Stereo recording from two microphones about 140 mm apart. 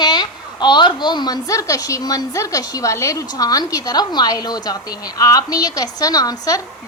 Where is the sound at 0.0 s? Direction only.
30° left (ahead or behind).